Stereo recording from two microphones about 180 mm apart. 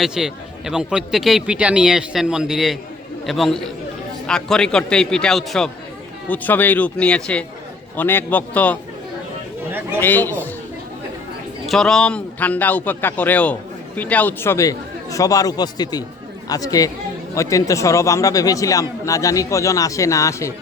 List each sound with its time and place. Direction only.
0.0 s a man's voice: 5° right (ahead or behind)
10.0 s speech: 10° left (ahead or behind)
11.6 s speech: centre (ahead or behind); by 20.5 s 15° left (ahead or behind)